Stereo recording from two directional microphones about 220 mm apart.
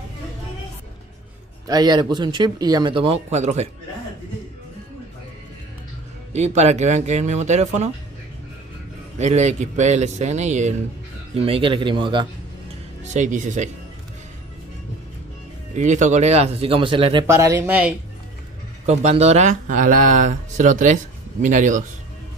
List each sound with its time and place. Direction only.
1.7 s speech: 20° right (ahead or behind)
6.3 s speech: 30° right (ahead or behind)
9.2 s speech: 30° right (ahead or behind)
13.1 s speech: 35° right (ahead or behind)
15.7 s speech: 35° right (ahead or behind); by 17.9 s 5° right (ahead or behind)
18.9 s speech: 30° right (ahead or behind)